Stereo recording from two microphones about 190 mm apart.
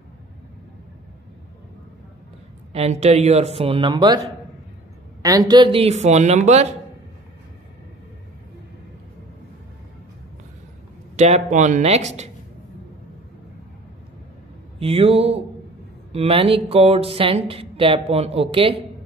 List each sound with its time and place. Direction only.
2.7 s speech: 35° right (ahead or behind)
5.2 s speech: 20° right (ahead or behind); by 6.7 s 35° right (ahead or behind)
11.1 s speech: 35° right (ahead or behind)
14.8 s speech: 30° right (ahead or behind)